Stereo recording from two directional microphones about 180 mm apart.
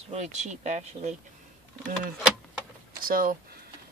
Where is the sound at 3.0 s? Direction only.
55° right (ahead or behind).